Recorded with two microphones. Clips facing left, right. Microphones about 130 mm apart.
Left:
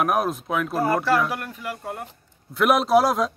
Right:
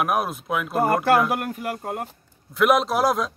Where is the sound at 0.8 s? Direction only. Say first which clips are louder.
Right 3 dB; 55° right (ahead or behind).